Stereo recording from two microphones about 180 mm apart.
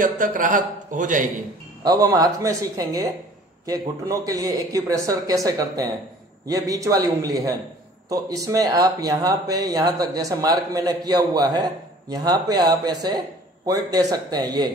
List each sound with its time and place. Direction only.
0.0 s speech: 45° right (ahead or behind)
1.8 s speech: 20° right (ahead or behind)